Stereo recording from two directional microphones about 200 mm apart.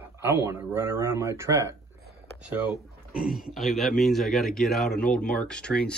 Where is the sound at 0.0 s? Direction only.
10° right (ahead or behind).